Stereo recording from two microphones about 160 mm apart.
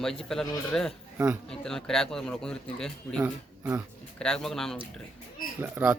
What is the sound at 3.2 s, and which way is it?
Speech, 15° right (ahead or behind).